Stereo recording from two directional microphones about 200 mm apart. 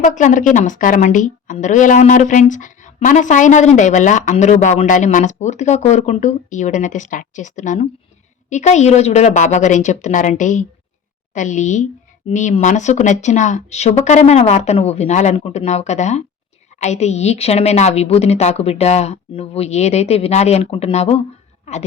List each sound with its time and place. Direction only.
0.0 s a woman's voice: 40° left (ahead or behind)